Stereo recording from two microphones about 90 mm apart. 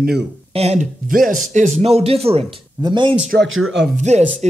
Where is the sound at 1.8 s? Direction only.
90° right.